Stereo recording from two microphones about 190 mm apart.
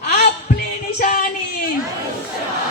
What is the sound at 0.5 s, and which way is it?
Music, 50° left (ahead or behind).